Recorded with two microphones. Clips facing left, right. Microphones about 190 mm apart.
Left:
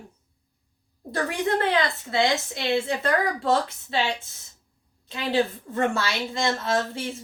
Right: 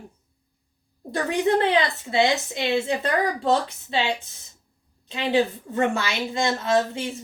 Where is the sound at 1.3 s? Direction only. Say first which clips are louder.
Right 4 dB; 20° right (ahead or behind).